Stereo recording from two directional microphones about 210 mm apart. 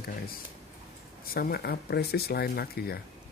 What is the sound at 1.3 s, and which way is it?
Speech, 45° left (ahead or behind).